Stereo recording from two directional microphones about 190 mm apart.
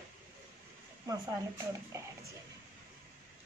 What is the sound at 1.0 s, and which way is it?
Speech, 15° right (ahead or behind).